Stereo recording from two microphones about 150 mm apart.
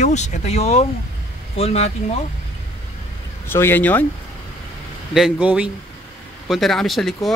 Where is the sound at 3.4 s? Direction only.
15° left (ahead or behind).